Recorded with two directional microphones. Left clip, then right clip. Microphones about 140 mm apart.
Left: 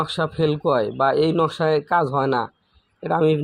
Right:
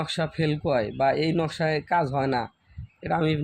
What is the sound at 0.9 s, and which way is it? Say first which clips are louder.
Speech: left 5 dB; 25° right (ahead or behind).